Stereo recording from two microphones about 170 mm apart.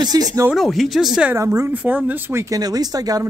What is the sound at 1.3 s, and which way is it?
Speech, 20° right (ahead or behind).